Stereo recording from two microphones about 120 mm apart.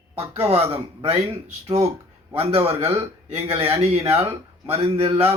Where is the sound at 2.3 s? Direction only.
55° right (ahead or behind).